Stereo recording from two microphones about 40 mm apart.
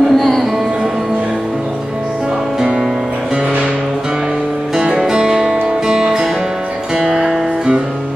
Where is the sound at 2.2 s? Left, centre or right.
Right.